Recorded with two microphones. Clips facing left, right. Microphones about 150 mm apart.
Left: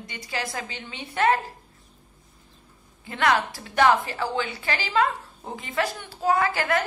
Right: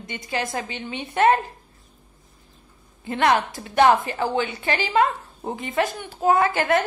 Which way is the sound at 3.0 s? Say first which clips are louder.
Right 3 dB; 20° right (ahead or behind).